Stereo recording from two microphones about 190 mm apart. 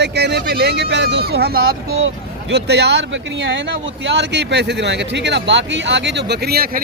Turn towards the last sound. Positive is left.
turn(degrees=-55)  # may be behind; listen again after turning